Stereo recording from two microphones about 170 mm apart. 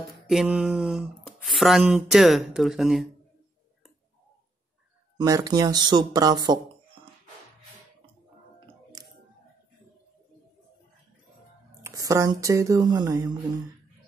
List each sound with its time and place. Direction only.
0.3 s speech: 5° right (ahead or behind)
5.1 s speech: 20° right (ahead or behind)
9.0 s a sound: 20° right (ahead or behind)
11.8 s speech: 20° right (ahead or behind)